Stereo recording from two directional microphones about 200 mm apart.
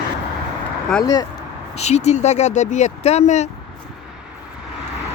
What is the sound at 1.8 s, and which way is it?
Speech, 35° left (ahead or behind).